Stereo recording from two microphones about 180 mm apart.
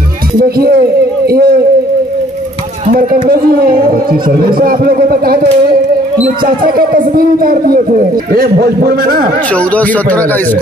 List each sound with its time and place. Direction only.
0.4 s a sound: 55° right (ahead or behind)
2.9 s speech: 55° right (ahead or behind)
9.5 s speech: 10° left (ahead or behind)